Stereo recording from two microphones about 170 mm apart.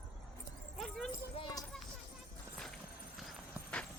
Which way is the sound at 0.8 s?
Centre (ahead or behind).